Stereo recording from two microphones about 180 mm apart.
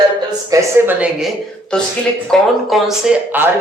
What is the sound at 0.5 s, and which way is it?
Speech, 15° right (ahead or behind).